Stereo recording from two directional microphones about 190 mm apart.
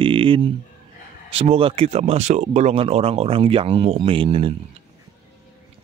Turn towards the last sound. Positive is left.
turn(degrees=-30)  # may be behind; listen again after turning